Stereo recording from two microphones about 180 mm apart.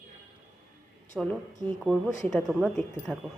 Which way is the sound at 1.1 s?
Centre (ahead or behind).